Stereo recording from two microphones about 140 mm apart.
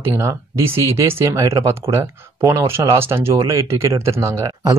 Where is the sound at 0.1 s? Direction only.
20° right (ahead or behind).